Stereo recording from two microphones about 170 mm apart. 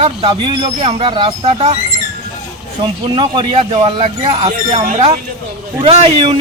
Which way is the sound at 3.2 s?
30° right (ahead or behind).